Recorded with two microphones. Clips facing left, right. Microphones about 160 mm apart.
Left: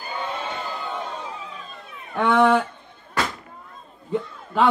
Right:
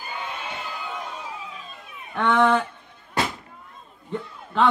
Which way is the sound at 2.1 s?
10° left (ahead or behind).